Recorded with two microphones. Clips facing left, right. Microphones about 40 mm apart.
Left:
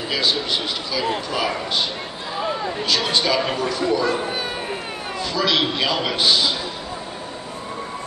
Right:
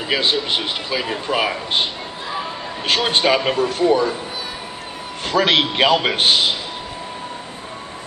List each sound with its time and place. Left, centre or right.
0.1 s a man's voice: right
2.9 s speech: right
5.2 s a man's voice: right